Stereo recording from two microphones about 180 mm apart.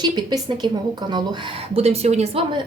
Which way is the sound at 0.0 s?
25° right (ahead or behind).